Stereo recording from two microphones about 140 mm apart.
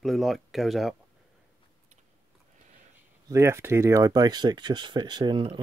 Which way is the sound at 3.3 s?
20° right (ahead or behind).